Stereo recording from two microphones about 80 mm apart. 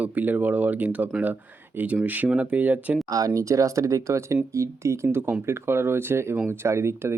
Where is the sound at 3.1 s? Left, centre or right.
Right.